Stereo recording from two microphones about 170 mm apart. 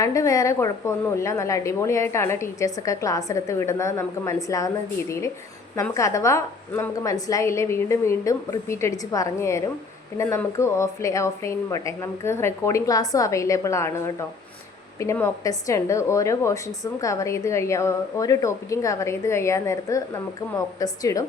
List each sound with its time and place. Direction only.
0.0 s a woman's voice: 20° left (ahead or behind)